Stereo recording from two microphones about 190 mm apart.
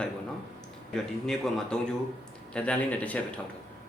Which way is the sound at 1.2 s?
Centre (ahead or behind).